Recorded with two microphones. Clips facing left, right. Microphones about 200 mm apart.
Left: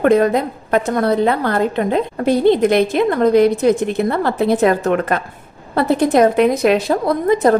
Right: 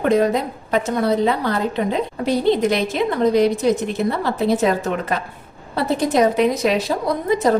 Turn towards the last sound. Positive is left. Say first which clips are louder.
# left 4 dB
turn(degrees=55)  # may be behind; listen again after turning